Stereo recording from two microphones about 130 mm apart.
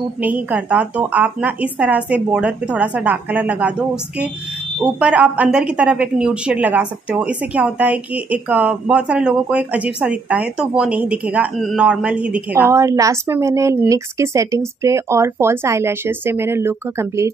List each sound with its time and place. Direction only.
0.2 s a woman's voice: 10° right (ahead or behind)
12.6 s speech: 20° right (ahead or behind)